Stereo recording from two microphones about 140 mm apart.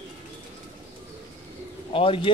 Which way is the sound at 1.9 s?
40° left (ahead or behind).